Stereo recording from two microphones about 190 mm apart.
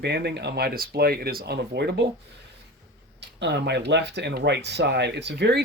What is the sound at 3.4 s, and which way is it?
Speech, 65° right (ahead or behind).